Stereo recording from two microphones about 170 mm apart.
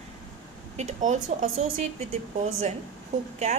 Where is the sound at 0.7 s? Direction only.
45° right (ahead or behind).